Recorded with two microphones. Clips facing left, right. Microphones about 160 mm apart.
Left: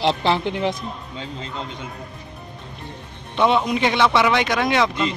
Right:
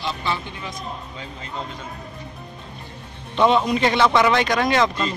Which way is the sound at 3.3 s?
10° left (ahead or behind).